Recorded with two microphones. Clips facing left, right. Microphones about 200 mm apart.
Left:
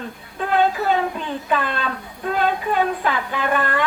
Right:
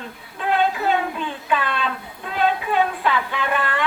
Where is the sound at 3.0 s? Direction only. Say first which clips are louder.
Even; 45° left (ahead or behind).